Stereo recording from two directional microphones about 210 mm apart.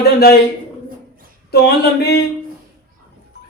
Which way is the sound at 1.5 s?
50° left (ahead or behind).